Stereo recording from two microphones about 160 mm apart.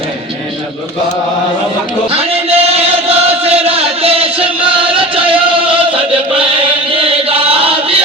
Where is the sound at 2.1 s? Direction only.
40° right (ahead or behind).